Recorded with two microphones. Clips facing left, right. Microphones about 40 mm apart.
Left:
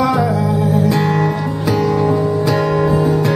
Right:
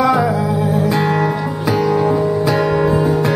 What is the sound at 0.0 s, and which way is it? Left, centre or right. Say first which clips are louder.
Music: right 1 dB; centre.